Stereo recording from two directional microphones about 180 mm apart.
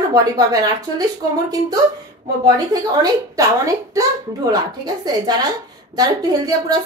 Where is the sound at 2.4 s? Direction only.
20° right (ahead or behind).